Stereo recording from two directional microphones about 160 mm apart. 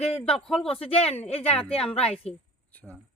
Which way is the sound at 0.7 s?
40° left (ahead or behind).